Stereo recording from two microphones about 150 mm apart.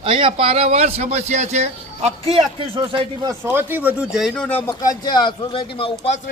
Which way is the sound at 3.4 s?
15° right (ahead or behind).